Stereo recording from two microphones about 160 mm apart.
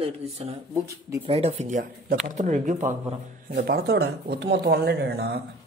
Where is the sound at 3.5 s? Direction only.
75° right (ahead or behind).